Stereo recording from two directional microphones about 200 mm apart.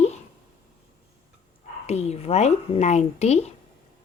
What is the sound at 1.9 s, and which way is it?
Speech, 35° left (ahead or behind).